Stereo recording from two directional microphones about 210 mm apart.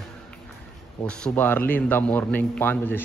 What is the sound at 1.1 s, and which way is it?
Speech, 5° left (ahead or behind).